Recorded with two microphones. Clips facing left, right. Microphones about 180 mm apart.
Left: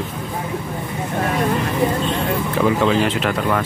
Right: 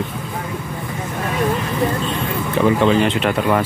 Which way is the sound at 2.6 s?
5° left (ahead or behind).